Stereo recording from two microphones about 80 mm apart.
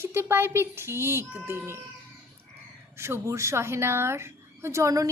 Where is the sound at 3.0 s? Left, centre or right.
Right.